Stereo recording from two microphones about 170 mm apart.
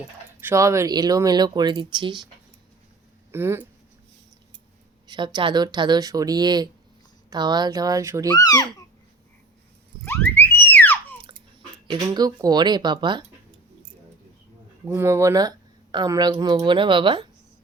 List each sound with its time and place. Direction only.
0.3 s speech: 15° right (ahead or behind)
3.3 s speech: 15° right (ahead or behind)
5.0 s speech: 25° right (ahead or behind)
8.4 s a child's voice: 20° left (ahead or behind)
10.1 s a sound: 10° left (ahead or behind)
11.9 s speech: 25° right (ahead or behind)
14.8 s speech: 15° right (ahead or behind)